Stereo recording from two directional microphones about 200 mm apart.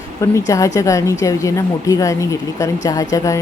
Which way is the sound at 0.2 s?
15° left (ahead or behind).